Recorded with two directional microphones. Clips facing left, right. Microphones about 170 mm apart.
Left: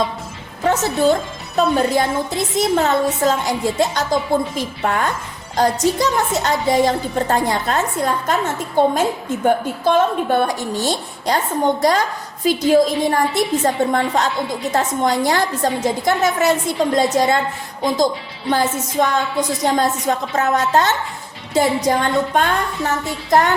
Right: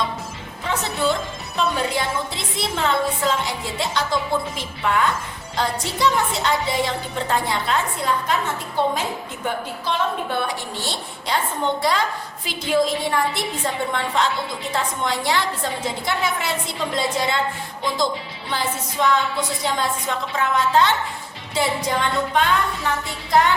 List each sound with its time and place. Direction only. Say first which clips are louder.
0.6 s a woman's voice: left 7 dB; 45° left (ahead or behind)